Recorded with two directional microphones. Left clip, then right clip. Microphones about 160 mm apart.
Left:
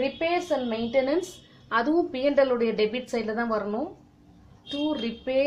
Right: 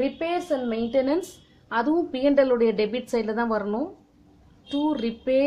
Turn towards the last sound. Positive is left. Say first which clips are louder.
# right 3 dB
turn(degrees=-45)  # may be behind; listen again after turning